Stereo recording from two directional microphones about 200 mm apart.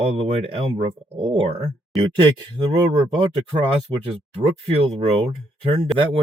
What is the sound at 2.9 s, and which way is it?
Speech, 25° right (ahead or behind).